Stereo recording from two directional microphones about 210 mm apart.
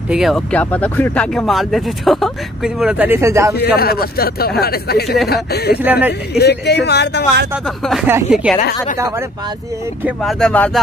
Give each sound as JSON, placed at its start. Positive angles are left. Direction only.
{"t": 0.1, "sound": "speech", "side_deg": 0}
{"t": 3.5, "sound": "speech", "side_deg": 50}
{"t": 5.8, "sound": "speech", "side_deg": -10}
{"t": 6.3, "sound": "speech", "side_deg": 50}
{"t": 7.6, "sound": "speech", "side_deg": 0}
{"t": 8.1, "sound": "speech", "side_deg": -10}
{"t": 10.0, "sound": "speech", "side_deg": 0}